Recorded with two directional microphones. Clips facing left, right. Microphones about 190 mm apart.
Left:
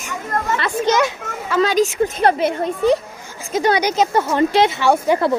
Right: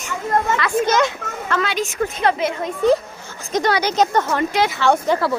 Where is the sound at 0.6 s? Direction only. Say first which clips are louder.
Even; 15° left (ahead or behind).